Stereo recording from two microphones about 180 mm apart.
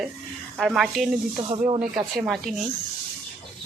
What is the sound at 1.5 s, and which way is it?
Speech, 30° right (ahead or behind).